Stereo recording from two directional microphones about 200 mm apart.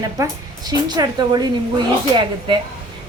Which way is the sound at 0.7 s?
20° right (ahead or behind).